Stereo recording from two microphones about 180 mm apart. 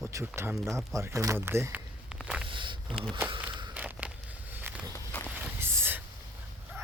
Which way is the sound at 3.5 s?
25° right (ahead or behind).